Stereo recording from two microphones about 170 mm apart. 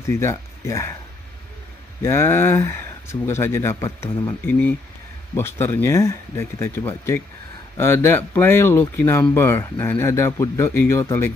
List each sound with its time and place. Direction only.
0.2 s speech: 15° left (ahead or behind)
2.0 s speech: 15° left (ahead or behind)